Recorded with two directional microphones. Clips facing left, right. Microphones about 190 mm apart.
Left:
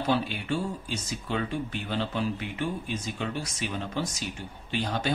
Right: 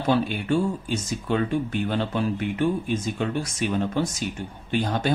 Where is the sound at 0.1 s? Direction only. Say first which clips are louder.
Right 7 dB; 50° right (ahead or behind).